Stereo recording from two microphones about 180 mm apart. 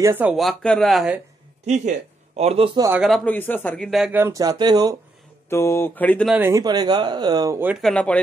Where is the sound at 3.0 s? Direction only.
5° left (ahead or behind); by 4.9 s 25° right (ahead or behind).